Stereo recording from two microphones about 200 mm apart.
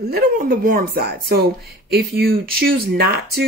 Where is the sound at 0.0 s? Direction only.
50° right (ahead or behind).